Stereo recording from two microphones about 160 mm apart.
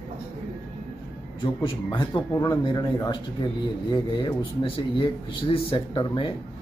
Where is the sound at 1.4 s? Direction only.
30° left (ahead or behind).